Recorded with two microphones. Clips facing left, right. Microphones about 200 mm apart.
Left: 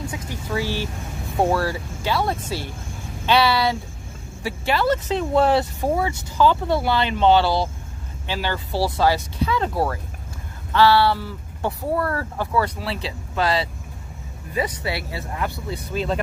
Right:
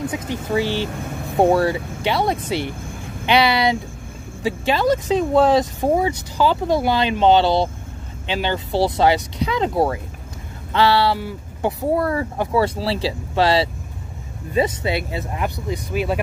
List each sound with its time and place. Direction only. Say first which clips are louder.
0.6 s speech: right 4 dB; 20° right (ahead or behind)
12.5 s speech: right 4 dB; 30° right (ahead or behind); by 16.2 s 10° right (ahead or behind)